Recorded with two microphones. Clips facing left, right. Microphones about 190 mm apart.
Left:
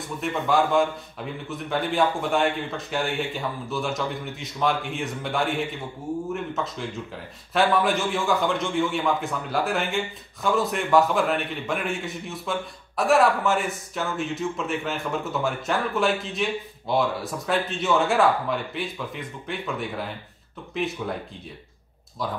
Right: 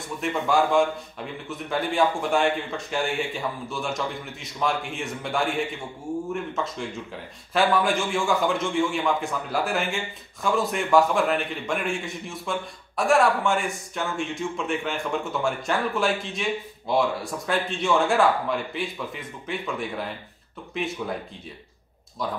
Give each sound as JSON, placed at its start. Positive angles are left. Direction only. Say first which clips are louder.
{"t": 0.2, "sound": "a man's voice", "louder": "even", "side_deg": 0}
{"t": 22.2, "sound": "a man's voice", "louder": "even", "side_deg": 0}